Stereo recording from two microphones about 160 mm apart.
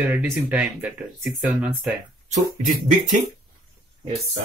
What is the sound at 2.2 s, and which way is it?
Speech, 50° right (ahead or behind).